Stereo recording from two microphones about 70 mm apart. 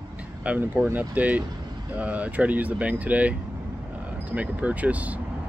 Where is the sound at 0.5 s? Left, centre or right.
Centre.